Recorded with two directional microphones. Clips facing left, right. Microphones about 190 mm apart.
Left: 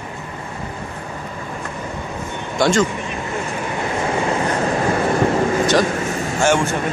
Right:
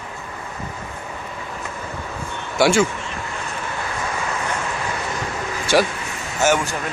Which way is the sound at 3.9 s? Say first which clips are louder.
Left 8 dB; 30° left (ahead or behind).